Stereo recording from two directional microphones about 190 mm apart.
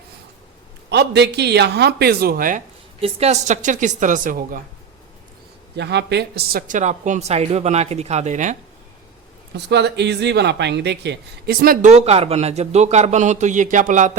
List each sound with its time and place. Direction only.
0.9 s speech: 65° right (ahead or behind)
3.0 s speech: 35° right (ahead or behind)
5.7 s speech: 65° right (ahead or behind); by 8.5 s 40° right (ahead or behind)
9.6 s speech: 65° right (ahead or behind); by 14.1 s 40° right (ahead or behind)